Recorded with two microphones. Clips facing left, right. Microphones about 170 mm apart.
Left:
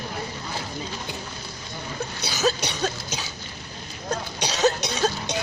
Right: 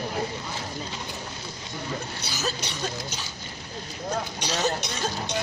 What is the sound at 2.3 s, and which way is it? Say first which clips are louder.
Throat clearing: left 8 dB; 75° left (ahead or behind).